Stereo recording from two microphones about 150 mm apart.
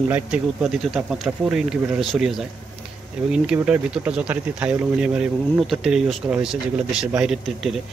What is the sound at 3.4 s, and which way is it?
Speech, 10° right (ahead or behind).